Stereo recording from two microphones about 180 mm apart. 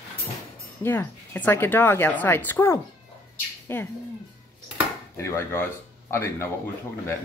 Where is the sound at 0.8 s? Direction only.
10° left (ahead or behind).